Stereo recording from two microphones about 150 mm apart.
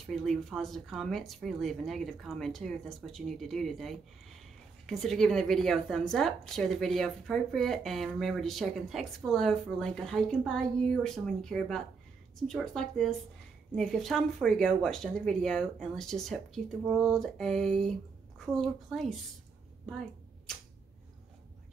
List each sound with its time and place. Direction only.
0.0 s a woman's voice: centre (ahead or behind)